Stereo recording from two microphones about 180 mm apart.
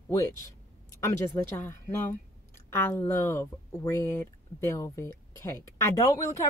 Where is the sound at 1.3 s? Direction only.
15° left (ahead or behind).